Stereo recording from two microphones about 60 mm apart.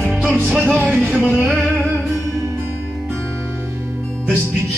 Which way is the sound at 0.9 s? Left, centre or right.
Centre.